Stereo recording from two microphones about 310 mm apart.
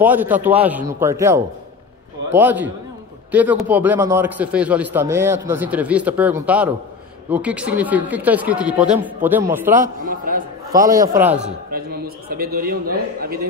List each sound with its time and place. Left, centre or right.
0.0 s a man's voice: centre
9.8 s a man's voice: right
10.7 s a man's voice: centre
11.7 s a man's voice: right